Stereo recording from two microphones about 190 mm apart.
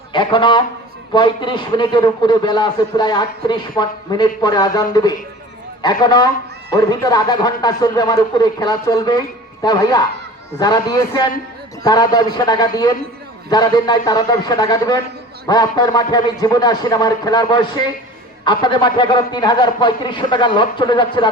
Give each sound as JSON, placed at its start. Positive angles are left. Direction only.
{"t": 0.1, "sound": "a man's voice", "side_deg": 25}